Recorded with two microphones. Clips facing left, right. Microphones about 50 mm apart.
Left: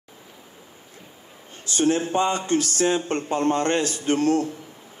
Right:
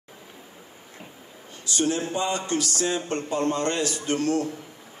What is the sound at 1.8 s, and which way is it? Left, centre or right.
A man's voice, left.